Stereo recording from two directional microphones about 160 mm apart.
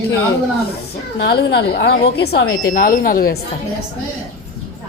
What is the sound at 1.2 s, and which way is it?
Speech, 90° left.